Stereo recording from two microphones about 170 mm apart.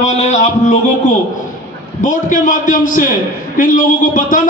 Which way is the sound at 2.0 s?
50° left (ahead or behind).